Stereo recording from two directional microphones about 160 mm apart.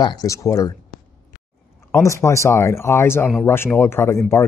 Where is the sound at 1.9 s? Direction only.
20° left (ahead or behind).